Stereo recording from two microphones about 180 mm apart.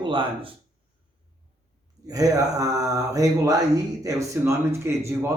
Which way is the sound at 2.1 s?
20° right (ahead or behind).